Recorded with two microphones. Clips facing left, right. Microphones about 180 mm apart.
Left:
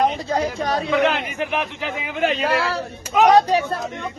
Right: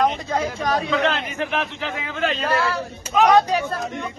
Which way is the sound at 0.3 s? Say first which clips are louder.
Left 1 dB; 35° left (ahead or behind).